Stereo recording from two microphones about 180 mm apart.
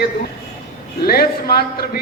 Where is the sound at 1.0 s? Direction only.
55° left (ahead or behind).